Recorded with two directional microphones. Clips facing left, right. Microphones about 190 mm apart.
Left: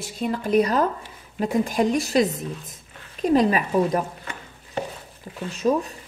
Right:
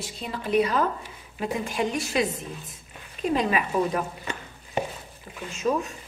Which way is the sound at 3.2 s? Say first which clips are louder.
Left 5 dB; 40° left (ahead or behind).